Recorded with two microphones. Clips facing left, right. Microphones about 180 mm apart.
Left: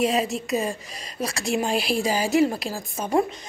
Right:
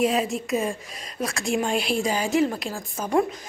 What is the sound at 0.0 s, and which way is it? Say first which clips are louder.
A woman's voice: even; centre (ahead or behind).